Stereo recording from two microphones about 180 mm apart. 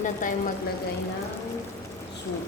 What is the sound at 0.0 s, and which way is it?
Speech, 45° left (ahead or behind).